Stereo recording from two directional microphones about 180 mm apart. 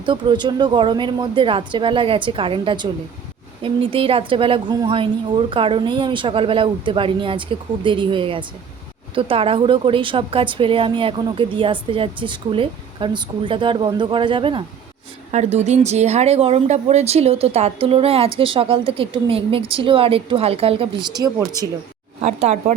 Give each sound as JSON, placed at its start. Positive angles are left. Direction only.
{"t": 0.0, "sound": "a woman's voice", "side_deg": -25}
{"t": 15.3, "sound": "a woman's voice", "side_deg": -40}
{"t": 22.2, "sound": "speech", "side_deg": -35}